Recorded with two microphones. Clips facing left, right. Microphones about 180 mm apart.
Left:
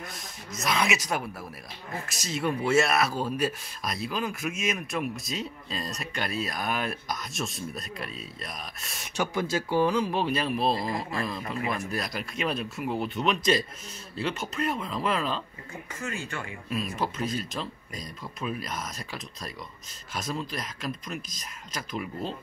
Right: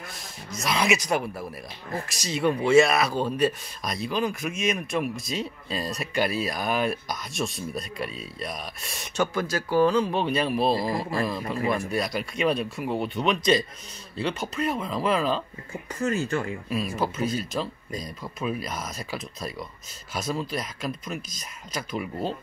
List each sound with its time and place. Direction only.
0.6 s speech: centre (ahead or behind)
16.0 s speech: 40° right (ahead or behind)
16.6 s speech: centre (ahead or behind)